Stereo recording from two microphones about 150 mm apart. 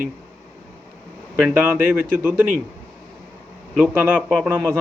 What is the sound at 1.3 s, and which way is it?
Speech, 5° right (ahead or behind).